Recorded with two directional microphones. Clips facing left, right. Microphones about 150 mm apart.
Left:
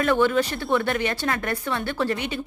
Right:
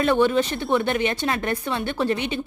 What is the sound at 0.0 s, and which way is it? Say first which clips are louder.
A woman's voice: right 1 dB; 20° right (ahead or behind).